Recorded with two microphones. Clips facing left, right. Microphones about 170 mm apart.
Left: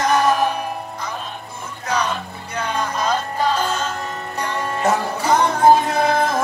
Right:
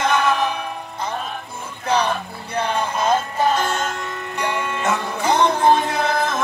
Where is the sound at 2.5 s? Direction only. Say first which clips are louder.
Right 2 dB; 30° right (ahead or behind).